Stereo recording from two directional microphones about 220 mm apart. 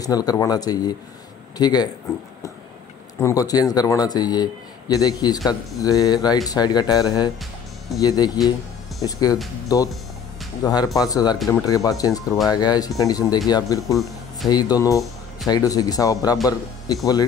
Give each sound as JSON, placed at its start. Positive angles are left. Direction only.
{"t": 0.0, "sound": "a man's voice", "side_deg": 15}
{"t": 3.2, "sound": "a man's voice", "side_deg": 15}